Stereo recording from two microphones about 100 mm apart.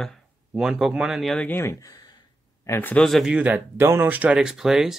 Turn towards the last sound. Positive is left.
turn(degrees=-5)  # may be behind; listen again after turning